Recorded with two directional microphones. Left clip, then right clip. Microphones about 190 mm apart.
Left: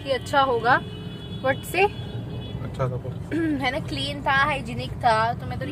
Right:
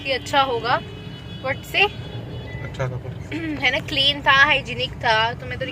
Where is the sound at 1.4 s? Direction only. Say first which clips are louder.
Right 2 dB; 60° left (ahead or behind).